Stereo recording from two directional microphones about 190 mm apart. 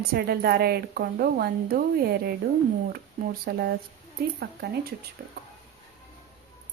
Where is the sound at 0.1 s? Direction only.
55° right (ahead or behind).